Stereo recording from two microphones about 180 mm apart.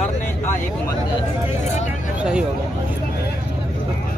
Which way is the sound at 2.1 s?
5° right (ahead or behind).